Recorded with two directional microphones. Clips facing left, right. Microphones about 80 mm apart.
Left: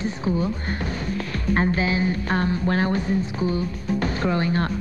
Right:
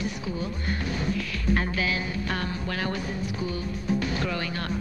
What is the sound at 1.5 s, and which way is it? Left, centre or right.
Speech, left.